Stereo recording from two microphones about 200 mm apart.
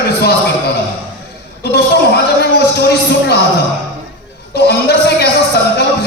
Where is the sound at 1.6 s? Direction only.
50° left (ahead or behind).